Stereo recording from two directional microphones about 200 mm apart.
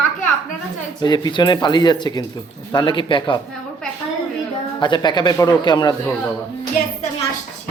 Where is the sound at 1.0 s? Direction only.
20° left (ahead or behind).